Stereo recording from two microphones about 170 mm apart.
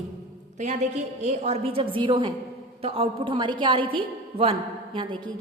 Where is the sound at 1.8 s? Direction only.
30° right (ahead or behind).